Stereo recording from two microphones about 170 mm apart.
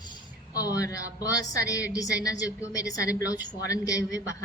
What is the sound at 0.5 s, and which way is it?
Speech, 20° left (ahead or behind).